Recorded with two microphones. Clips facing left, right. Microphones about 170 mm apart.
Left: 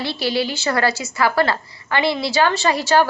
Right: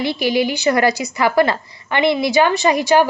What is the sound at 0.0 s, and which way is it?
A woman's voice, 15° right (ahead or behind).